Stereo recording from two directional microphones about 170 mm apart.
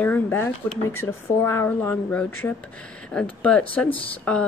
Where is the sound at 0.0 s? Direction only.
10° left (ahead or behind).